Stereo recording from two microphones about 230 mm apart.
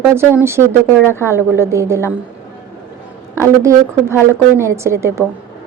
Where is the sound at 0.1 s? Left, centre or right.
Centre.